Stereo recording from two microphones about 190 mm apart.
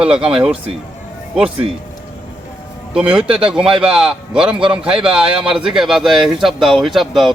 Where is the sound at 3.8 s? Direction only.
5° right (ahead or behind).